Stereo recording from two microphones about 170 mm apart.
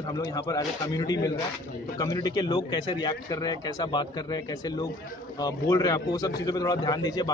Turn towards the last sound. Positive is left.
turn(degrees=20)  # may be behind; listen again after turning